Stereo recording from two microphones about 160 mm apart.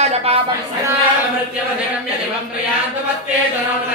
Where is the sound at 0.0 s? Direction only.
40° right (ahead or behind).